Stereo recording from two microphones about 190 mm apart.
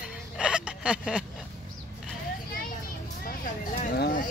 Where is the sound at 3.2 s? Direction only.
45° left (ahead or behind).